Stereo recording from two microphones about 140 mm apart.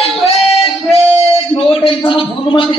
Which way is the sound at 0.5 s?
45° left (ahead or behind).